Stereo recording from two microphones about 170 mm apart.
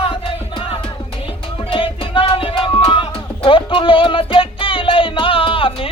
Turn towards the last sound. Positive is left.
turn(degrees=30)  # may be behind; listen again after turning